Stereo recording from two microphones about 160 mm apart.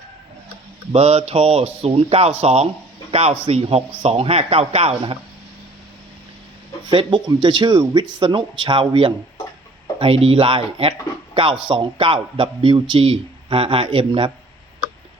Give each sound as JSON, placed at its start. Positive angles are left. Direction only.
{"t": 0.9, "sound": "a man's voice", "side_deg": -35}
{"t": 6.9, "sound": "a man's voice", "side_deg": -30}